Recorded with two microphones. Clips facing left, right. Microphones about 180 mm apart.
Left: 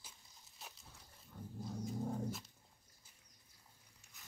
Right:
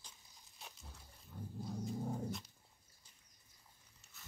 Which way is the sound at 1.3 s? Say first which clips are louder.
Right 2 dB; 10° right (ahead or behind).